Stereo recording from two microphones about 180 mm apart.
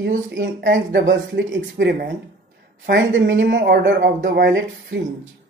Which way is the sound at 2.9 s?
90° right.